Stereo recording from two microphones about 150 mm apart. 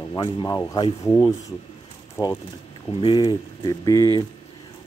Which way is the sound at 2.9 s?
35° left (ahead or behind).